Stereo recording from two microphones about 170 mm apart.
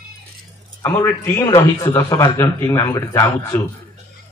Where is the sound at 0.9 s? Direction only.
10° left (ahead or behind).